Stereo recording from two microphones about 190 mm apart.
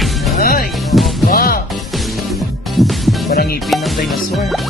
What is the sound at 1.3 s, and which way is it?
Music, 50° left (ahead or behind).